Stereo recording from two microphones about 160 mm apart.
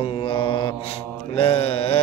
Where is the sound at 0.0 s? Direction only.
35° left (ahead or behind).